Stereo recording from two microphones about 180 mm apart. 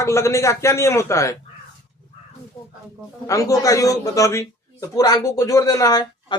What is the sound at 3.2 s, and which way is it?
A man's voice, 20° left (ahead or behind).